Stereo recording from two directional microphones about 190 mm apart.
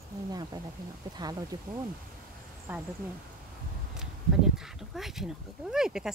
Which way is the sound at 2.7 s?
10° right (ahead or behind).